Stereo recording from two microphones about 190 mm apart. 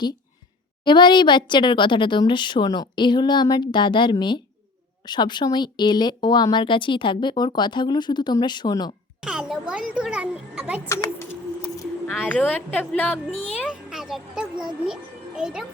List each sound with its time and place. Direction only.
0.9 s speech: 25° left (ahead or behind)
9.2 s music: 5° right (ahead or behind)
10.8 s a woman's voice: 15° left (ahead or behind); by 15.6 s 5° right (ahead or behind)